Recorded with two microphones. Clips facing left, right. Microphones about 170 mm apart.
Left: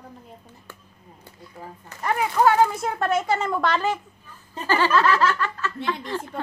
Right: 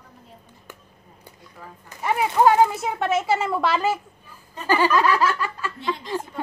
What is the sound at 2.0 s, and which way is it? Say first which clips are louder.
Speech: right 2 dB; 10° right (ahead or behind).